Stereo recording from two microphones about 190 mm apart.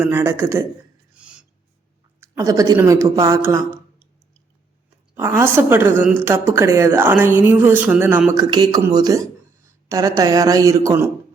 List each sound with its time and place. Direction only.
0.0 s a woman's voice: 10° right (ahead or behind)
1.1 s a sound: 5° right (ahead or behind)
2.2 s a woman's voice: 15° right (ahead or behind)
5.1 s a woman's voice: 10° right (ahead or behind)